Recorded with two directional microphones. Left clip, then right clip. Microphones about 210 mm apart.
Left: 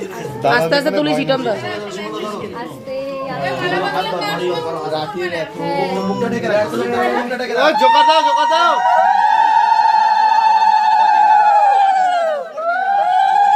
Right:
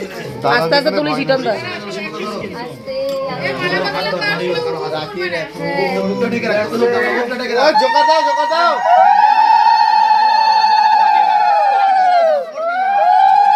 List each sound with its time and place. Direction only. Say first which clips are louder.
0.7 s speech: right 1 dB; 20° left (ahead or behind)
5.2 s speech: right 1 dB; 20° left (ahead or behind)
7.6 s police car: left 1 dB; 25° left (ahead or behind)
13.0 s a sound: right 4 dB; 15° left (ahead or behind)